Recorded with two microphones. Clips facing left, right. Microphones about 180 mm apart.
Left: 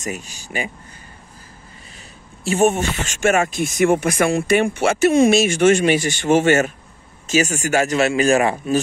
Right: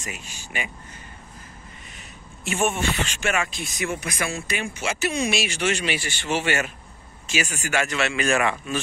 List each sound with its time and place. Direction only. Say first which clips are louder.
0.0 s speech: left 9 dB; 40° left (ahead or behind)
2.4 s speech: left 7 dB; 40° left (ahead or behind)